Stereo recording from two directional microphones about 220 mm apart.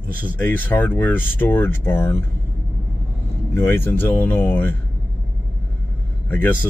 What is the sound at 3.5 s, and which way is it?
Speech, 10° left (ahead or behind).